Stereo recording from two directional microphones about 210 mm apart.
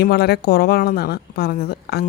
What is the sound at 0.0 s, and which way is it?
Speech, 50° left (ahead or behind).